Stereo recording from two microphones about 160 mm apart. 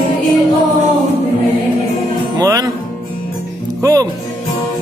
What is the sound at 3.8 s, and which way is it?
Music, 20° right (ahead or behind).